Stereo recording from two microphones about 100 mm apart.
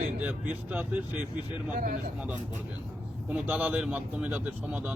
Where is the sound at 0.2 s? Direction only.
15° right (ahead or behind).